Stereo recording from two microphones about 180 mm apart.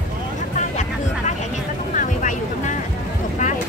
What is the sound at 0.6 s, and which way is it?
Vehicle, 40° left (ahead or behind).